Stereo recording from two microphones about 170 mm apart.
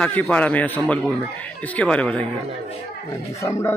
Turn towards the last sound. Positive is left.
turn(degrees=15)  # may be behind; listen again after turning